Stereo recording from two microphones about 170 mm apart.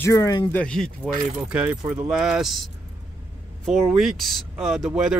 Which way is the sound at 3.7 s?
Centre (ahead or behind).